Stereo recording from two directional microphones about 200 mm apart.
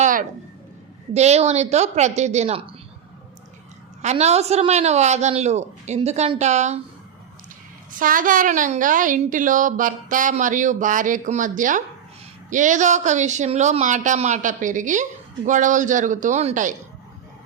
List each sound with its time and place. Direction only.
0.0 s a sound: 40° right (ahead or behind)
1.1 s a woman's voice: 35° right (ahead or behind)
4.0 s a woman's voice: 35° right (ahead or behind)
7.9 s a woman's voice: 45° right (ahead or behind)